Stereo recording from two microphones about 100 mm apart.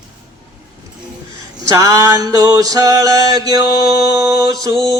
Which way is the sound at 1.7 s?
35° right (ahead or behind).